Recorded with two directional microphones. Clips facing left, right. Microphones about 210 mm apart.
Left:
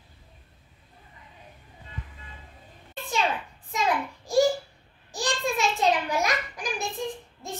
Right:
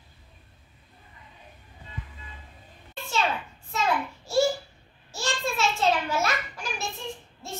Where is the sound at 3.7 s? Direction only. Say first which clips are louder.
Even; 15° left (ahead or behind).